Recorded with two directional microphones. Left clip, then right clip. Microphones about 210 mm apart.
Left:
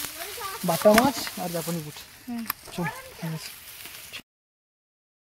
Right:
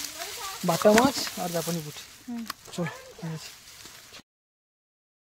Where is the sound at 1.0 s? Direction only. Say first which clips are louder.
Even; 30° right (ahead or behind).